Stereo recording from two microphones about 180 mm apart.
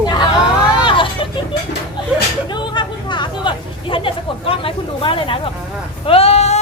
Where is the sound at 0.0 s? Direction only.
25° left (ahead or behind).